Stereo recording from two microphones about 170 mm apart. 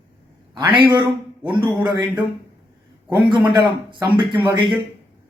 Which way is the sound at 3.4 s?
25° right (ahead or behind).